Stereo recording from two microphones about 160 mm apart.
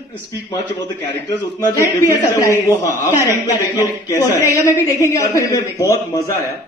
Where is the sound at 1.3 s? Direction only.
20° left (ahead or behind).